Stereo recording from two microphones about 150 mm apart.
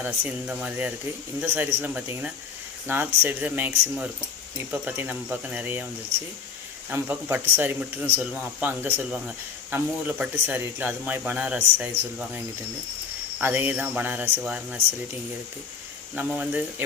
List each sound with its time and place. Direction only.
0.0 s speech: 10° right (ahead or behind)
6.9 s speech: 15° right (ahead or behind)
13.4 s speech: 15° right (ahead or behind)
16.1 s speech: 10° right (ahead or behind)